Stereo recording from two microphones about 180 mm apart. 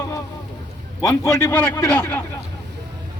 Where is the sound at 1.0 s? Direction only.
15° left (ahead or behind).